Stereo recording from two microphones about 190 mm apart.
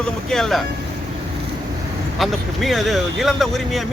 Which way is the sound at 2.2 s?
Centre (ahead or behind).